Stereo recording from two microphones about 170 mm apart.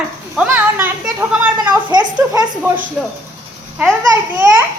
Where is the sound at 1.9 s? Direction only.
25° right (ahead or behind).